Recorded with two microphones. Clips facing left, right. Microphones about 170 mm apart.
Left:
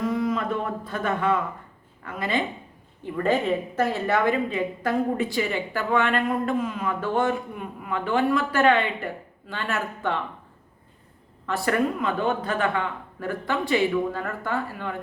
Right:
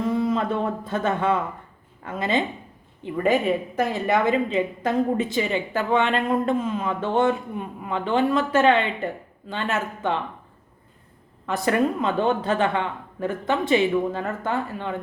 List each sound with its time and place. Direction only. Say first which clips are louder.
0.0 s a woman's voice: right 2 dB; 25° right (ahead or behind)
3.0 s a woman's voice: right 2 dB; 15° right (ahead or behind)
11.4 s a woman's voice: right 2 dB; 20° right (ahead or behind)